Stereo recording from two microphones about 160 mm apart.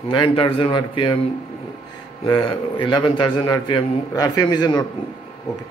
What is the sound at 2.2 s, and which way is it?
A man's voice, 35° left (ahead or behind).